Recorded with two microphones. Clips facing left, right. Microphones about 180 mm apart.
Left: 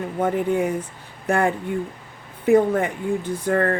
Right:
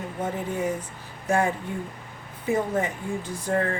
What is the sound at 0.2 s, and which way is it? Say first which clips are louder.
Speech: left 7 dB; 60° left (ahead or behind).